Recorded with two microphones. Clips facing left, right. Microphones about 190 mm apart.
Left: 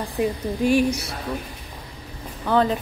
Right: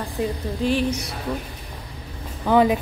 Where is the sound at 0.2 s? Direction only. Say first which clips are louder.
Left 2 dB; 15° left (ahead or behind).